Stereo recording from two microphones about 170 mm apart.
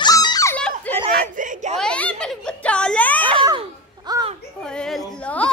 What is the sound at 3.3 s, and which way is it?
Babbling, 30° right (ahead or behind).